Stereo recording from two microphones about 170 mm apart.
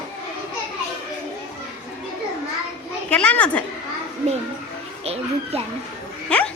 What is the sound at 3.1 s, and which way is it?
Speech, 10° left (ahead or behind).